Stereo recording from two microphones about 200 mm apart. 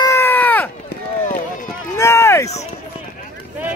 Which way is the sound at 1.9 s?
15° left (ahead or behind).